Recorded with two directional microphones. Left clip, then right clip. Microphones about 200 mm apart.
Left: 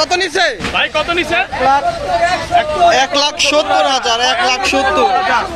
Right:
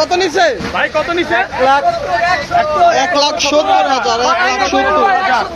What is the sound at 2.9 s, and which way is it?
A man's voice, centre (ahead or behind).